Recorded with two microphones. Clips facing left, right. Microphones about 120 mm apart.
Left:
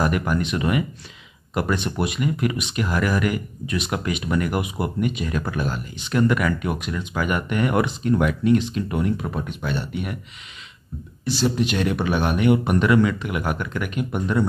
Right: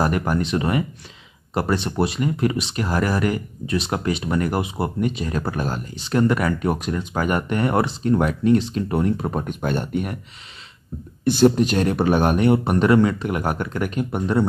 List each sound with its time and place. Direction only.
0.0 s speech: 35° right (ahead or behind)
11.2 s speech: 55° right (ahead or behind); by 14.5 s 30° right (ahead or behind)